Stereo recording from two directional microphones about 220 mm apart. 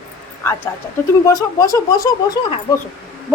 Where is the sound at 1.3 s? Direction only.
15° left (ahead or behind).